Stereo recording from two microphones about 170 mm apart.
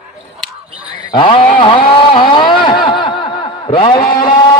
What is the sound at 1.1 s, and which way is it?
Mantra, 30° left (ahead or behind).